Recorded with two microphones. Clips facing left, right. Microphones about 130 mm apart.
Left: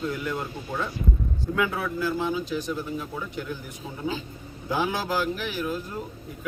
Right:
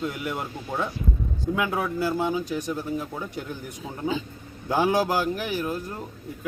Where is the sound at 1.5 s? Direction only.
15° right (ahead or behind).